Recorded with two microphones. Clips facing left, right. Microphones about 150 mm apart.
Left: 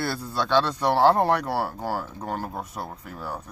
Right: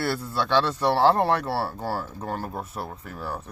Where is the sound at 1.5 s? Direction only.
15° left (ahead or behind).